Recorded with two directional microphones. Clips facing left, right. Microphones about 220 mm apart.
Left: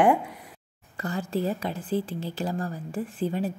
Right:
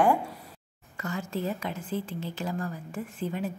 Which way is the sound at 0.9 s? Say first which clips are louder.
Left 4 dB; 35° left (ahead or behind).